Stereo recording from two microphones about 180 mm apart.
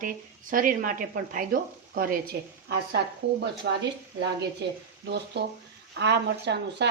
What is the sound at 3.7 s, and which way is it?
Speech, 70° right (ahead or behind).